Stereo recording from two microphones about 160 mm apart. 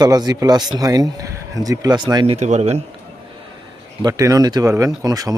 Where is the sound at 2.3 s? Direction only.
45° right (ahead or behind).